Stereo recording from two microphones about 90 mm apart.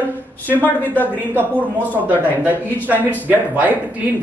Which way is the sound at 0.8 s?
20° left (ahead or behind).